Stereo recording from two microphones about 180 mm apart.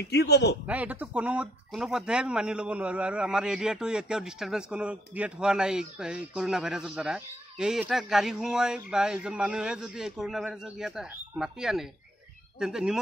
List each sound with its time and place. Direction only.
0.0 s a man's voice: 65° left (ahead or behind)
0.7 s speech: 10° right (ahead or behind)